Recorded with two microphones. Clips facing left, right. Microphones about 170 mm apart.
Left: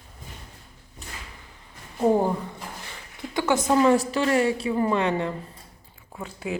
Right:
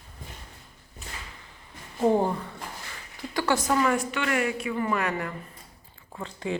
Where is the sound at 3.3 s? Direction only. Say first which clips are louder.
Left 2 dB; 15° left (ahead or behind).